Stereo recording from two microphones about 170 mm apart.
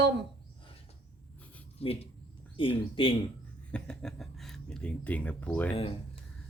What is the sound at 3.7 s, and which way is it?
Speech, 5° left (ahead or behind).